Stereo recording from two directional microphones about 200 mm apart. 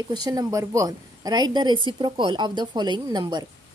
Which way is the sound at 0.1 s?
20° right (ahead or behind).